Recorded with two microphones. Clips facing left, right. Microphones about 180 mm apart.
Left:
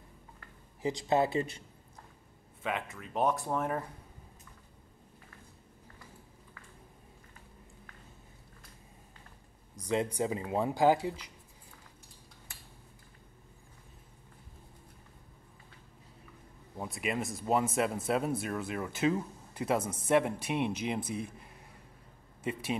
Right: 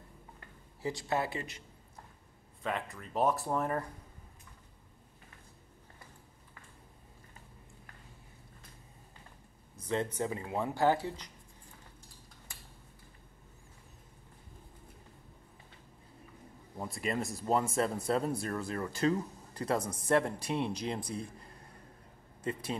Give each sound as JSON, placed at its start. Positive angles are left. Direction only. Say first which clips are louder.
{"t": 0.8, "sound": "speech", "louder": "left 5 dB", "side_deg": 20}
{"t": 2.6, "sound": "speech", "louder": "left 1 dB", "side_deg": 5}
{"t": 9.8, "sound": "speech", "louder": "left 2 dB", "side_deg": 15}
{"t": 16.7, "sound": "speech", "louder": "even", "side_deg": 5}